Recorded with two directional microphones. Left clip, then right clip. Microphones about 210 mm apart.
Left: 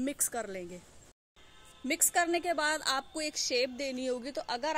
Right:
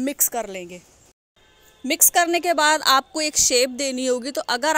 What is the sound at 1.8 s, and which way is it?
A woman's voice, 35° right (ahead or behind).